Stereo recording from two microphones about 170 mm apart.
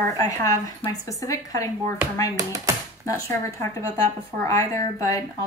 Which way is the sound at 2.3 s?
20° right (ahead or behind).